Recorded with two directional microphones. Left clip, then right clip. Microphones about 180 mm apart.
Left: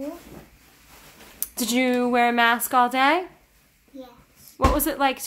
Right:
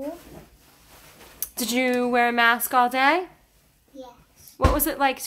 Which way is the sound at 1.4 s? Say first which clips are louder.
Left 1 dB; centre (ahead or behind).